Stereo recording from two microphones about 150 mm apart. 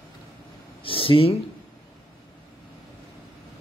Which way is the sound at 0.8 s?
35° left (ahead or behind).